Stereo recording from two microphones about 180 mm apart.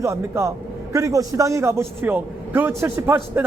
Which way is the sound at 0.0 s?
15° right (ahead or behind).